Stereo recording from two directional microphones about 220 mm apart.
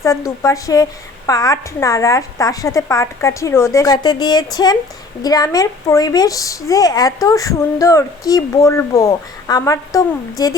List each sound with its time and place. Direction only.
0.0 s a woman's voice: 15° left (ahead or behind)